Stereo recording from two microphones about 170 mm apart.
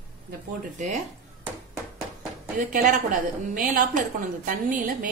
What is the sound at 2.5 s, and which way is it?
A woman's voice, 55° right (ahead or behind).